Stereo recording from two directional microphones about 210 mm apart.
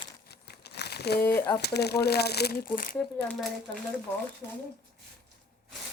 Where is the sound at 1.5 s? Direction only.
50° left (ahead or behind).